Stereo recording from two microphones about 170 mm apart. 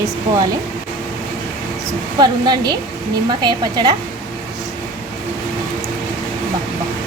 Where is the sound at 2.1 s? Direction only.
25° right (ahead or behind).